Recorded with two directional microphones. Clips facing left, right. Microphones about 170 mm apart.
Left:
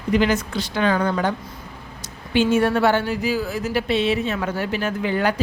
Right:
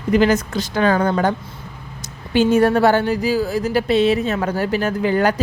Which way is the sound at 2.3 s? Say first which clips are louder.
Right 4 dB; 40° right (ahead or behind).